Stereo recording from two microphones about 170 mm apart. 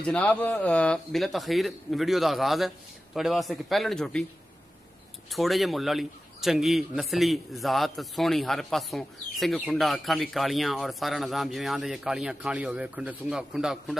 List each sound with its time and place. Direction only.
0.0 s a man's voice: 5° left (ahead or behind)
5.3 s a man's voice: centre (ahead or behind)